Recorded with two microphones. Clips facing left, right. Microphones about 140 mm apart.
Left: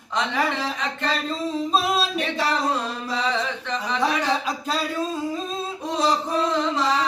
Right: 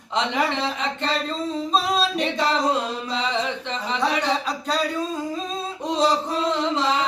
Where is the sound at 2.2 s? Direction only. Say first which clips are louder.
Right 2 dB; 20° right (ahead or behind).